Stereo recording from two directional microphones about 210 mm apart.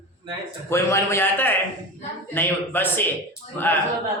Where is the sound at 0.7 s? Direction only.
15° left (ahead or behind).